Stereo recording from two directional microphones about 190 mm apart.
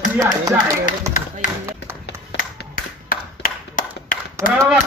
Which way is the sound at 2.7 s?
45° left (ahead or behind).